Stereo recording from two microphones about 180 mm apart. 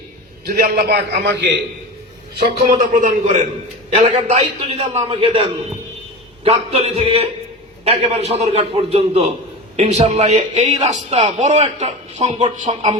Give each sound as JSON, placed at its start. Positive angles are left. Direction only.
{"t": 0.4, "sound": "a man's voice", "side_deg": -60}
{"t": 2.4, "sound": "a man's voice", "side_deg": -50}